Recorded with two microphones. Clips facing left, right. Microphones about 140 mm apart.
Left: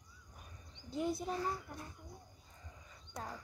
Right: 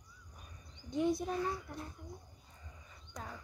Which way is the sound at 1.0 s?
5° left (ahead or behind).